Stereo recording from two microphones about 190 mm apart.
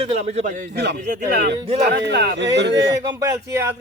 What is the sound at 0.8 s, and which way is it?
Speech, 55° right (ahead or behind).